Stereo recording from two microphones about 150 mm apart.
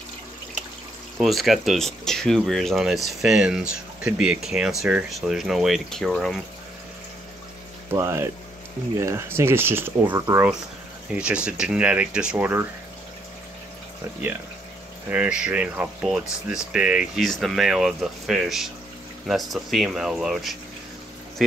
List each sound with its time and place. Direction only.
1.2 s speech: centre (ahead or behind)
7.9 s speech: 20° right (ahead or behind)
11.1 s speech: 5° right (ahead or behind)
15.0 s speech: 5° right (ahead or behind)